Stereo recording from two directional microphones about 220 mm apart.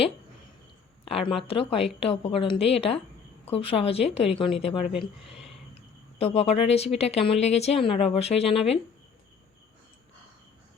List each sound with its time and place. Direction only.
1.0 s speech: 25° left (ahead or behind)
4.9 s speech: centre (ahead or behind)
6.1 s speech: 30° left (ahead or behind)